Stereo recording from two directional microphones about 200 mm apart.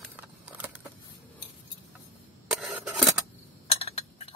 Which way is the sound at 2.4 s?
5° right (ahead or behind).